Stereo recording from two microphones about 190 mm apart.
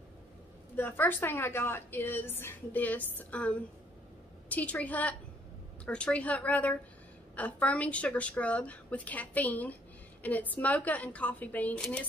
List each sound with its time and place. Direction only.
0.7 s a woman's voice: 10° left (ahead or behind)